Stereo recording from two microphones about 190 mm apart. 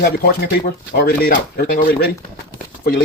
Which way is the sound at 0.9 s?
55° left (ahead or behind).